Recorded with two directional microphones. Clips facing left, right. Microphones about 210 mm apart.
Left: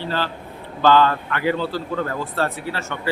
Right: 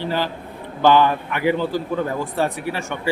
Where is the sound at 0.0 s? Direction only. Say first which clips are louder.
Right 2 dB; 15° right (ahead or behind).